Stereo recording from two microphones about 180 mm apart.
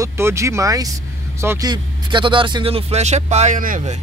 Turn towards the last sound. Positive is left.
turn(degrees=-45)  # may be behind; listen again after turning